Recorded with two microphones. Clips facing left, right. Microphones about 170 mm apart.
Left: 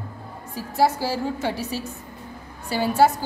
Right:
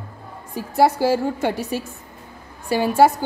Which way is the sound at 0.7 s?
55° right (ahead or behind).